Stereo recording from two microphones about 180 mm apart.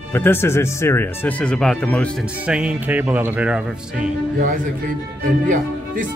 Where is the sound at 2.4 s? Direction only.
5° right (ahead or behind).